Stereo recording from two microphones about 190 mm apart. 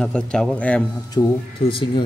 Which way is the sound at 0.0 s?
5° left (ahead or behind).